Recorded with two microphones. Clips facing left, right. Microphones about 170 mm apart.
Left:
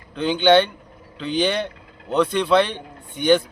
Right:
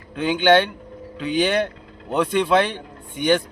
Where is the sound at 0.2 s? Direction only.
5° right (ahead or behind).